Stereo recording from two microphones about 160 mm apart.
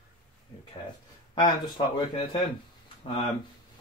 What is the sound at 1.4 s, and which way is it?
Speech, 30° left (ahead or behind).